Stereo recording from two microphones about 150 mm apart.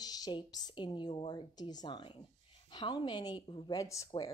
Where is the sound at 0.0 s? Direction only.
25° left (ahead or behind).